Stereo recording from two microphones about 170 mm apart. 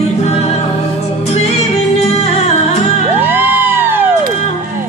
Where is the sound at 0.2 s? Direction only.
35° left (ahead or behind).